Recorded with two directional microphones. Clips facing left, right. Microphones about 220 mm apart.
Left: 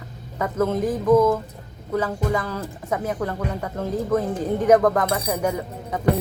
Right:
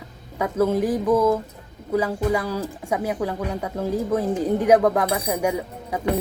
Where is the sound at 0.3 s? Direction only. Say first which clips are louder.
Right 2 dB; 10° right (ahead or behind).